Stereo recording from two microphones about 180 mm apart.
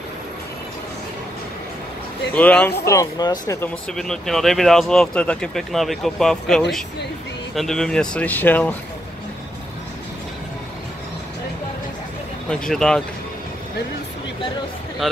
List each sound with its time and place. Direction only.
2.3 s speech: 10° left (ahead or behind)
3.6 s speech: 5° left (ahead or behind)
12.4 s speech: 5° left (ahead or behind)